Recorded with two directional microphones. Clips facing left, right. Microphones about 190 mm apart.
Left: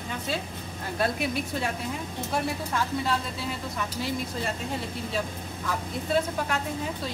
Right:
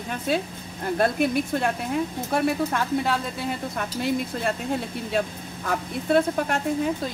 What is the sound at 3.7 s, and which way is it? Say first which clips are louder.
Speech: right 6 dB; 60° right (ahead or behind).